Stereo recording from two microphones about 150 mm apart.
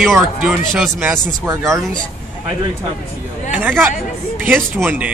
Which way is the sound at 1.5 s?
20° right (ahead or behind).